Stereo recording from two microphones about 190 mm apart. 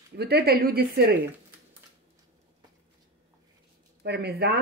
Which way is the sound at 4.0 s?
60° right (ahead or behind).